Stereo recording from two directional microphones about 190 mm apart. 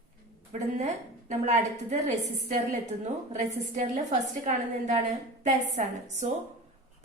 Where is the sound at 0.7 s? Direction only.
40° right (ahead or behind).